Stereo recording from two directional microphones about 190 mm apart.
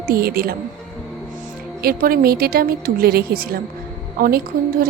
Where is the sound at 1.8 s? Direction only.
50° right (ahead or behind).